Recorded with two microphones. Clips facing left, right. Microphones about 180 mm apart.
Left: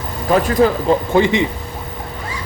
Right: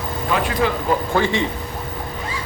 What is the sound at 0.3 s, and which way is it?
Speech, 40° left (ahead or behind).